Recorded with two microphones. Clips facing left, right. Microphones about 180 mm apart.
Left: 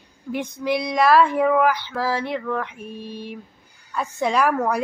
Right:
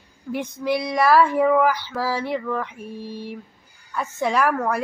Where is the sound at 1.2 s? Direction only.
15° left (ahead or behind).